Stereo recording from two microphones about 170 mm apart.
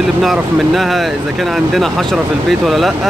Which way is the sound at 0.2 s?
Centre (ahead or behind).